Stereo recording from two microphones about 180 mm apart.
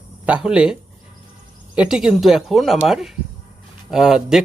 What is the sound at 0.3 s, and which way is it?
Speech, 5° right (ahead or behind).